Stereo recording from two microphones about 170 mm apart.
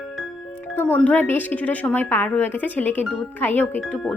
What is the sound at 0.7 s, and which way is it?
Speech, 10° left (ahead or behind).